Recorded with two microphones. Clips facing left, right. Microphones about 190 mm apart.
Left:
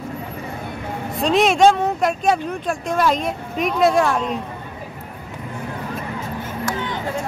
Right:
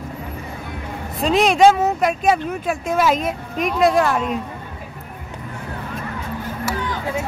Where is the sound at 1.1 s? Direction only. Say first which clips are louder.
Even; centre (ahead or behind).